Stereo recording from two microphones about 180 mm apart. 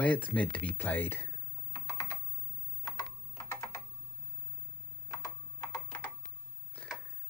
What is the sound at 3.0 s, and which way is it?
Typing, 15° left (ahead or behind).